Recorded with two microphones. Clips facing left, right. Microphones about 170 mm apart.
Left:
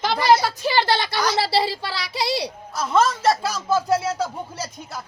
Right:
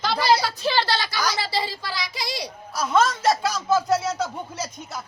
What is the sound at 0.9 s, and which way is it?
Speech, 60° left (ahead or behind).